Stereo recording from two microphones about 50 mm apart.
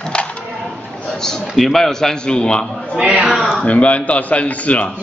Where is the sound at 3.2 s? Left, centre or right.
Centre.